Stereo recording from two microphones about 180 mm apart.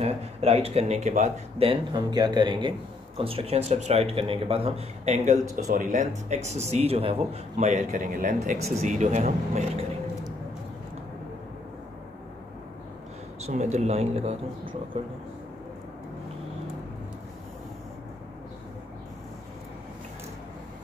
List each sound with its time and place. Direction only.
0.0 s a man's voice: 35° right (ahead or behind)
13.5 s a man's voice: 40° right (ahead or behind)